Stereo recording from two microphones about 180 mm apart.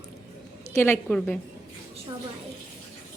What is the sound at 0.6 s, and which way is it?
Speech, 15° left (ahead or behind).